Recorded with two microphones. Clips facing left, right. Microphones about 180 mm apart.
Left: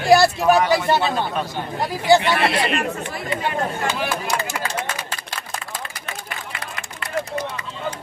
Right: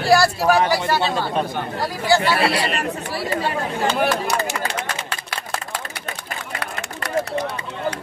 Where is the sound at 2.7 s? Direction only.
35° right (ahead or behind).